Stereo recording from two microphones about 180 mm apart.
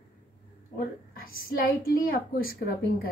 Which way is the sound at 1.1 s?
55° left (ahead or behind).